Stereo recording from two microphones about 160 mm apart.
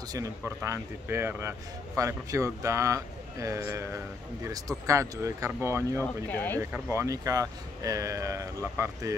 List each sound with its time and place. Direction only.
0.1 s speech: 20° right (ahead or behind)
6.0 s speech: 10° left (ahead or behind)
6.6 s speech: 20° right (ahead or behind)